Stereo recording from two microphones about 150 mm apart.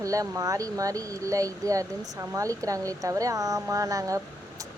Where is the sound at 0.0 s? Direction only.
20° right (ahead or behind).